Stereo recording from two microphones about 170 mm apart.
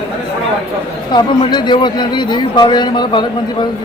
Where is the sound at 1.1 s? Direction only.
25° left (ahead or behind).